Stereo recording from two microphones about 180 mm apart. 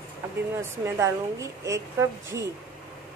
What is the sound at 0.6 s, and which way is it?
A woman's voice, 15° right (ahead or behind).